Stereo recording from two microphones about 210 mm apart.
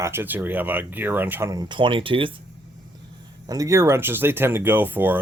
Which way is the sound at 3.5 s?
15° right (ahead or behind).